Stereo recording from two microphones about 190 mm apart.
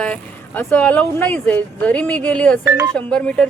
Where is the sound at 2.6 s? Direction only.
15° right (ahead or behind).